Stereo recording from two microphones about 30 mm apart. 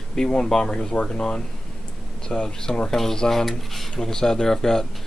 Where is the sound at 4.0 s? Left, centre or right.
Centre.